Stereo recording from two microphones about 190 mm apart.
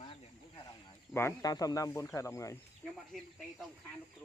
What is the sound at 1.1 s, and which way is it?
Speech, 15° left (ahead or behind).